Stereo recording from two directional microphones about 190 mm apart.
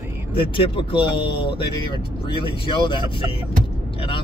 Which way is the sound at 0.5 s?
25° left (ahead or behind).